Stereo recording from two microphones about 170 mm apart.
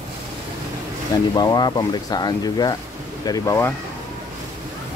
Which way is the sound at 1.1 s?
25° left (ahead or behind).